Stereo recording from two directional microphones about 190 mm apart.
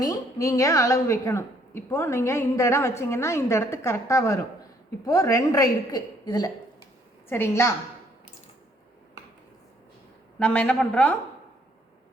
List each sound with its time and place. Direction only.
0.0 s a woman's voice: 20° left (ahead or behind)
10.4 s a woman's voice: 5° left (ahead or behind)